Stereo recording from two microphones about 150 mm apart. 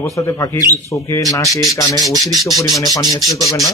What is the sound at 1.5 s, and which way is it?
Speech, centre (ahead or behind).